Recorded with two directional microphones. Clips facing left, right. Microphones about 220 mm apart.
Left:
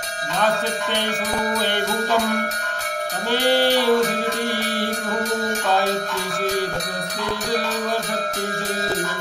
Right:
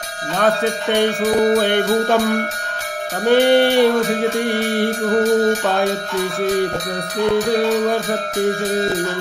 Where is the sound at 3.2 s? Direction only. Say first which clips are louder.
Right 7 dB; 55° right (ahead or behind).